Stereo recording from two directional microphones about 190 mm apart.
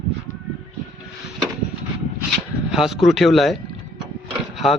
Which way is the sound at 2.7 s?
Centre (ahead or behind).